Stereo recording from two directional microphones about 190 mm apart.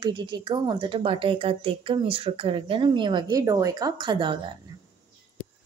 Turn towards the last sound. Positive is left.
turn(degrees=-25)  # may be behind; listen again after turning